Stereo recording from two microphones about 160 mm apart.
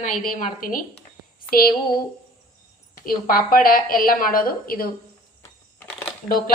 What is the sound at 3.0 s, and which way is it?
A woman's voice, 65° left (ahead or behind).